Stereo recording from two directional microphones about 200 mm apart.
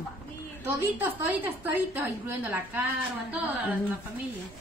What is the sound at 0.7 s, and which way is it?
A woman's voice, 10° right (ahead or behind).